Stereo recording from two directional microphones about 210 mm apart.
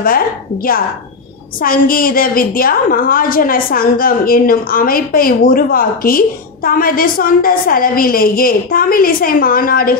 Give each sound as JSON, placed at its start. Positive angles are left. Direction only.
{"t": 1.6, "sound": "a woman's voice", "side_deg": 45}